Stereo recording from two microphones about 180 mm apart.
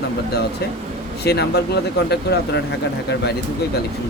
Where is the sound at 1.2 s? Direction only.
65° left (ahead or behind).